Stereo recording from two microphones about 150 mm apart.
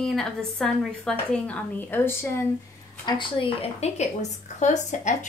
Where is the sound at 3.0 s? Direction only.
40° left (ahead or behind).